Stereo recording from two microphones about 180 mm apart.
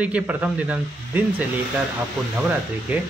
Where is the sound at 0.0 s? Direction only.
10° right (ahead or behind).